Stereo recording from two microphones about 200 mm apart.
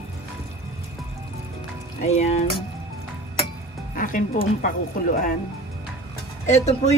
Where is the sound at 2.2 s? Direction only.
30° left (ahead or behind).